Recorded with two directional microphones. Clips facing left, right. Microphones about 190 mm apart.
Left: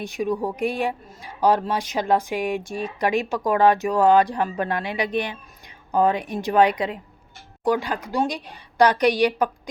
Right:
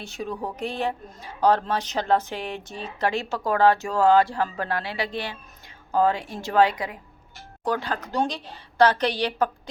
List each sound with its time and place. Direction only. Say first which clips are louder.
0.0 s speech: left 7 dB; 15° left (ahead or behind)